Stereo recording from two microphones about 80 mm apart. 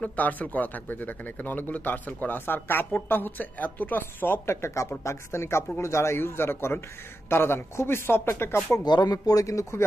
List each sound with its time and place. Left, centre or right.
0.0 s a man's voice: centre
8.8 s speech: left